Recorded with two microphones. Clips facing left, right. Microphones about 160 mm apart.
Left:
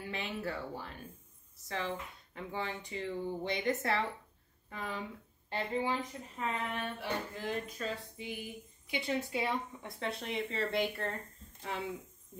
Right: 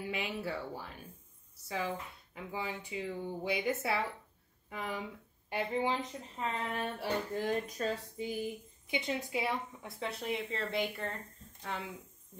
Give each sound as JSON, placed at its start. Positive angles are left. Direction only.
{"t": 0.1, "sound": "a woman's voice", "side_deg": -10}
{"t": 6.4, "sound": "speech", "side_deg": -35}
{"t": 8.8, "sound": "a woman's voice", "side_deg": -20}
{"t": 9.4, "sound": "speech", "side_deg": -5}